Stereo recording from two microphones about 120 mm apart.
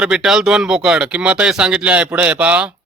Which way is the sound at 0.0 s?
5° right (ahead or behind).